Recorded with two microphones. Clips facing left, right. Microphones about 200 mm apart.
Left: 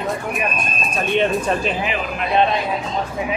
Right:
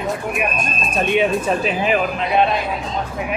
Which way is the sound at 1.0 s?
10° right (ahead or behind).